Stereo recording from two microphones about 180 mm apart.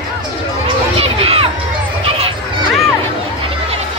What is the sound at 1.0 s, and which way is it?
Run, 30° right (ahead or behind).